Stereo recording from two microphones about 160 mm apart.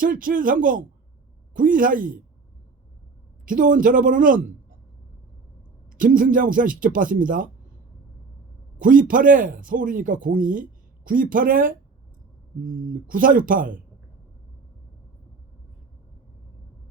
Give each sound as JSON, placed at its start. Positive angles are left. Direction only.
{"t": 0.0, "sound": "speech", "side_deg": -60}
{"t": 3.4, "sound": "speech", "side_deg": -55}
{"t": 5.9, "sound": "speech", "side_deg": -60}
{"t": 8.8, "sound": "speech", "side_deg": -60}